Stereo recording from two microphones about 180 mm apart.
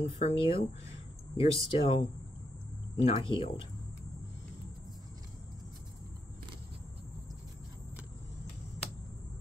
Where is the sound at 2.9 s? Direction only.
30° left (ahead or behind).